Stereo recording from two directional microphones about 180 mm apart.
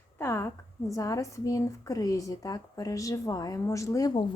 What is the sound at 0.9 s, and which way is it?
Speech, 20° left (ahead or behind).